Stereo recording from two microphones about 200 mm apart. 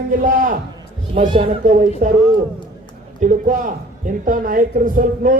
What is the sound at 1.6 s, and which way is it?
Speech, 40° right (ahead or behind).